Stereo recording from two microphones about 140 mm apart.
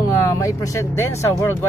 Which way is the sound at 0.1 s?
25° left (ahead or behind).